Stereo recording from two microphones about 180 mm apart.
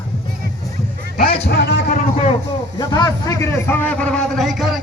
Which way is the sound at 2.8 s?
20° left (ahead or behind).